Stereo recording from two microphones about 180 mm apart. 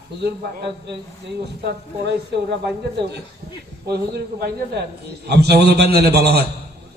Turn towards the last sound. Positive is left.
turn(degrees=-60)  # may be behind; listen again after turning